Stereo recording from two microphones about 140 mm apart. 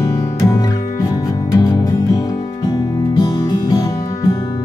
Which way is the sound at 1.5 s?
25° left (ahead or behind).